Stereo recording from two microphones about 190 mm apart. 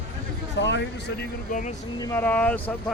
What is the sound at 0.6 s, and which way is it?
Speech, 70° left (ahead or behind).